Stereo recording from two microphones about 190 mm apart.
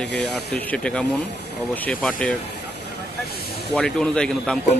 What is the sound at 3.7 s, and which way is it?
Speech, 5° left (ahead or behind).